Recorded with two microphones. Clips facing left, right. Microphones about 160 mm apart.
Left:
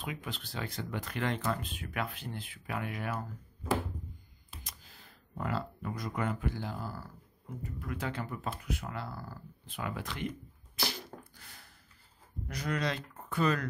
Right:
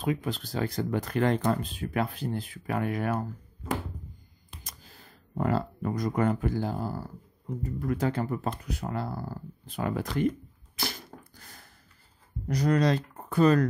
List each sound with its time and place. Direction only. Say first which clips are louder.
0.0 s speech: right 11 dB; 40° right (ahead or behind)
4.6 s speech: right 3 dB; 40° right (ahead or behind)
10.8 s a sound: right 1 dB; 45° right (ahead or behind)
12.4 s speech: right 10 dB; 40° right (ahead or behind)